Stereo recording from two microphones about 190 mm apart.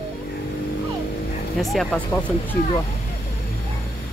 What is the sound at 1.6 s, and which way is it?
Speech, centre (ahead or behind).